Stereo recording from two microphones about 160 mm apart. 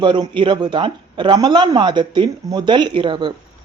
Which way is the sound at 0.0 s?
30° right (ahead or behind).